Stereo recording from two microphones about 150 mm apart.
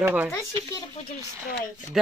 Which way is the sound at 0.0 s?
10° right (ahead or behind).